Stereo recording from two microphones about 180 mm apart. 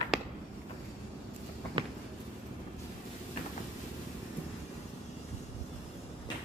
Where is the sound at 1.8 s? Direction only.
25° right (ahead or behind).